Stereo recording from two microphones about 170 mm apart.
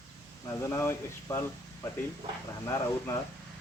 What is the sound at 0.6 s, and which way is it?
Speech, 15° left (ahead or behind).